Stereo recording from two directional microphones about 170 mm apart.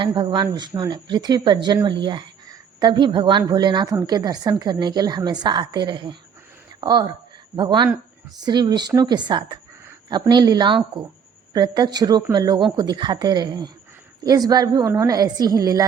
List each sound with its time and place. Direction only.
0.0 s a woman's voice: 30° right (ahead or behind)